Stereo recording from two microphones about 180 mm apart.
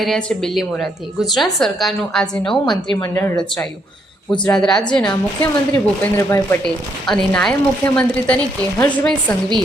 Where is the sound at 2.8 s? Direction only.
25° left (ahead or behind).